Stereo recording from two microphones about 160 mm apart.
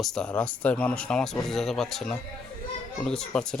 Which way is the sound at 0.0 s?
5° left (ahead or behind).